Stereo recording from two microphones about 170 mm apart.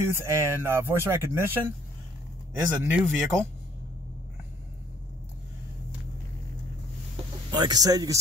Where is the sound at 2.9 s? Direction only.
10° right (ahead or behind).